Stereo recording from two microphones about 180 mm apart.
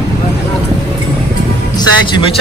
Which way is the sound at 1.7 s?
25° left (ahead or behind).